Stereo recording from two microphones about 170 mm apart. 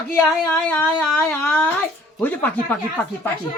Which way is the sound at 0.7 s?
15° left (ahead or behind).